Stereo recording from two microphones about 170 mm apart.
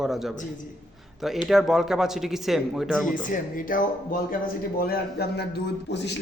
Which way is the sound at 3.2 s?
50° left (ahead or behind).